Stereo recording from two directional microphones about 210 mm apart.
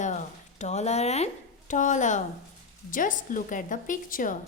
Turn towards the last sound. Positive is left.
turn(degrees=40)  # may be behind; listen again after turning